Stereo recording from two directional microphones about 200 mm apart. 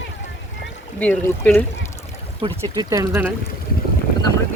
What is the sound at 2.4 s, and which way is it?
Speech, 20° right (ahead or behind).